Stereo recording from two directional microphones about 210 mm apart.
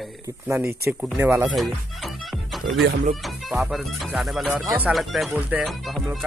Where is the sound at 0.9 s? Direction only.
10° right (ahead or behind).